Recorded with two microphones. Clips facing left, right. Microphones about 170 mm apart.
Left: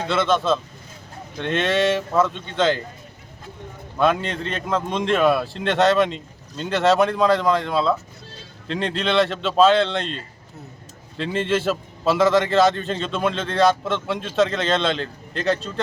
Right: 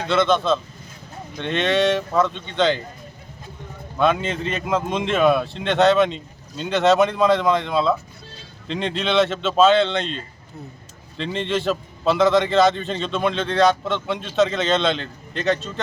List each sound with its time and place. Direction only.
0.1 s a man's voice: centre (ahead or behind)
3.9 s a man's voice: centre (ahead or behind)